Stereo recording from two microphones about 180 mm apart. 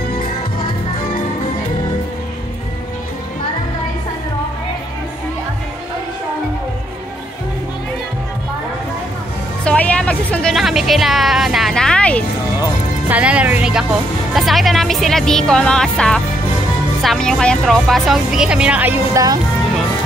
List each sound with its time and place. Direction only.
9.7 s speech: 5° left (ahead or behind)
13.1 s speech: 5° right (ahead or behind)